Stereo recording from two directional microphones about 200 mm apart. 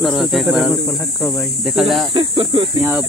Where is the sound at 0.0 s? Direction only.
Centre (ahead or behind).